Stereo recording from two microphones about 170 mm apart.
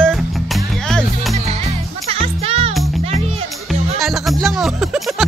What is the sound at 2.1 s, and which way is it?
Music, 35° right (ahead or behind).